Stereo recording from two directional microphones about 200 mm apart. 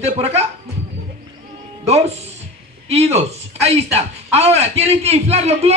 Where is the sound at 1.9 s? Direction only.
30° right (ahead or behind).